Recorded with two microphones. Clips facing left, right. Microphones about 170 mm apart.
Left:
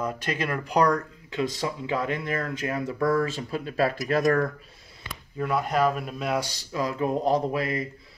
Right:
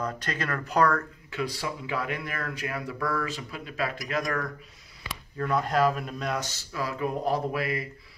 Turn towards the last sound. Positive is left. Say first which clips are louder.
# left 3 dB
turn(degrees=20)  # may be behind; listen again after turning